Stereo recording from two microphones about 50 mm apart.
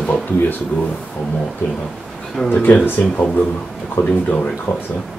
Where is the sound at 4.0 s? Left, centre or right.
Left.